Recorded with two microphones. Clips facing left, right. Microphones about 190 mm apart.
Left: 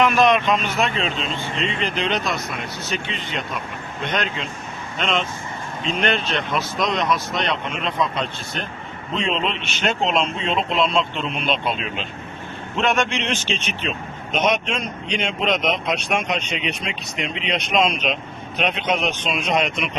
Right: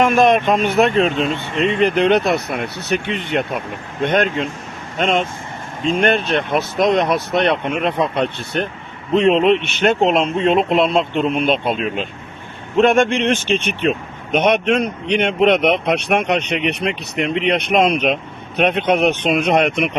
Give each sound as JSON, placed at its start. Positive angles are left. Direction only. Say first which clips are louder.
{"t": 0.0, "sound": "speech", "louder": "right 3 dB", "side_deg": -50}